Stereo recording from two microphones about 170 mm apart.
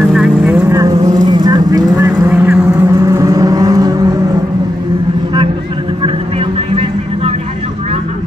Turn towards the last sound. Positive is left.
turn(degrees=-35)  # may be behind; listen again after turning